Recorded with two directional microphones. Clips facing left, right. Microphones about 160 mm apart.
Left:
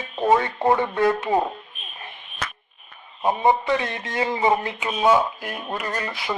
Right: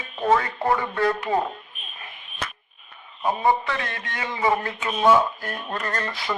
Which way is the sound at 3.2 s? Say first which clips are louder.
Left 2 dB; 20° left (ahead or behind).